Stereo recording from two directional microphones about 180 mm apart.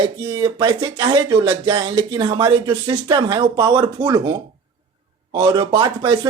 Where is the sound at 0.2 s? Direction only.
25° right (ahead or behind).